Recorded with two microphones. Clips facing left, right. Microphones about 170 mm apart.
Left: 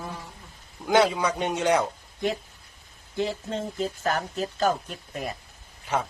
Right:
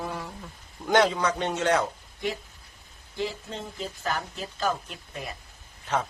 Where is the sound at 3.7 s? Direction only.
45° left (ahead or behind).